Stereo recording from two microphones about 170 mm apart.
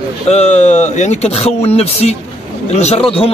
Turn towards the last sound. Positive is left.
turn(degrees=35)  # may be behind; listen again after turning